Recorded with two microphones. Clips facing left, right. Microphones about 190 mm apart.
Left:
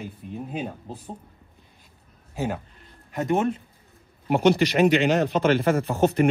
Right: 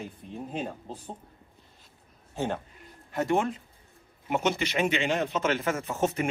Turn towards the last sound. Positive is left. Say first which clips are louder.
# left 7 dB
turn(degrees=35)  # may be behind; listen again after turning